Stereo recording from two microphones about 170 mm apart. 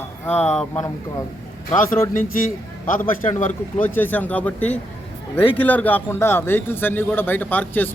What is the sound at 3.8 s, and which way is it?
Speech, 10° left (ahead or behind).